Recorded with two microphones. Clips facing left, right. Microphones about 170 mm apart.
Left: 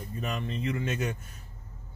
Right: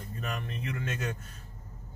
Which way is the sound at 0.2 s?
20° left (ahead or behind).